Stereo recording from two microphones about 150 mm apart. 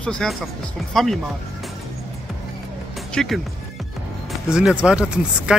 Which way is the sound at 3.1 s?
Centre (ahead or behind).